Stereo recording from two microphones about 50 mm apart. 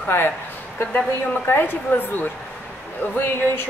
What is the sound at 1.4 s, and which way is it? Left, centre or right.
Speech, left.